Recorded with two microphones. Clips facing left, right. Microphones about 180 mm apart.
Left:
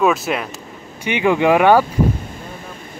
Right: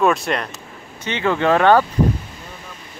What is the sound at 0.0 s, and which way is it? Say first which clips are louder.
Speech: left 1 dB; centre (ahead or behind).